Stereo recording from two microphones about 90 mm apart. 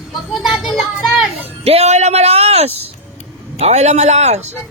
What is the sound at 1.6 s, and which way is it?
Speech, 90° right.